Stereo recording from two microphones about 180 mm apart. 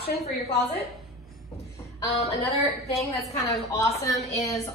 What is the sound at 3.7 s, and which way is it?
Speech, 20° left (ahead or behind).